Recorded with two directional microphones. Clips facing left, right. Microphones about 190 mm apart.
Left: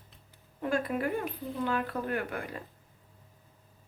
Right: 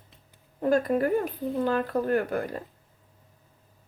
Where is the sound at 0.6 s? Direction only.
40° right (ahead or behind).